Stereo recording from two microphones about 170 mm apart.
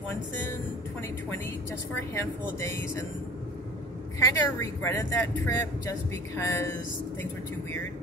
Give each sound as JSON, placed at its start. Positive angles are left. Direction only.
{"t": 2.0, "sound": "speech", "side_deg": 15}
{"t": 4.2, "sound": "speech", "side_deg": 15}